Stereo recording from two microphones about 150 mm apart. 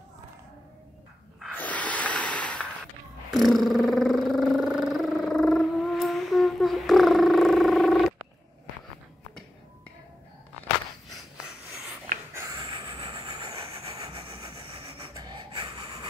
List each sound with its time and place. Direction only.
1.5 s a sound: 10° left (ahead or behind)
12.4 s snort: 25° right (ahead or behind)
12.6 s vehicle: 35° right (ahead or behind)
15.1 s snort: 30° right (ahead or behind)